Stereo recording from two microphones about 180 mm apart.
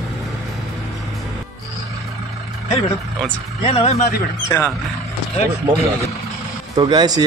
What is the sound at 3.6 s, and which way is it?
Speech, 30° left (ahead or behind).